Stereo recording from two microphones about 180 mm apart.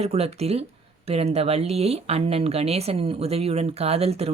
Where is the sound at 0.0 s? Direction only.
35° right (ahead or behind).